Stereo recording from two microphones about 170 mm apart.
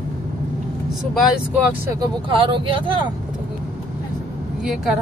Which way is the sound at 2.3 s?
30° right (ahead or behind).